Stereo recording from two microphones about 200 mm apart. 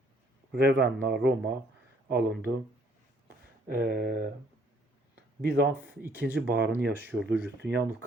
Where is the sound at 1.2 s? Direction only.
55° right (ahead or behind).